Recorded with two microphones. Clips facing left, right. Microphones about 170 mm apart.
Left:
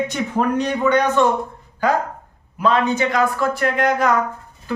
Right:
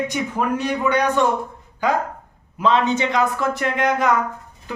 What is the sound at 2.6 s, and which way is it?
A man's voice, 20° right (ahead or behind).